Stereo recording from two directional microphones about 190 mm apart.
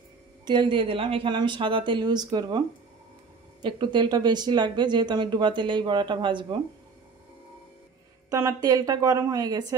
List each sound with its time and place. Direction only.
0.5 s speech: 25° right (ahead or behind)
3.6 s speech: 25° right (ahead or behind)
8.3 s speech: 15° right (ahead or behind)